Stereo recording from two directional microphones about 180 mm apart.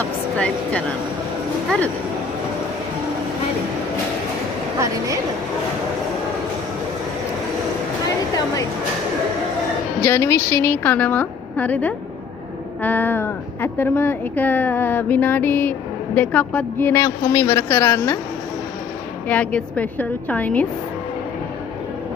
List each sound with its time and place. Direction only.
0.0 s speech: 5° left (ahead or behind)
10.0 s speech: 15° left (ahead or behind)
19.2 s speech: 5° left (ahead or behind)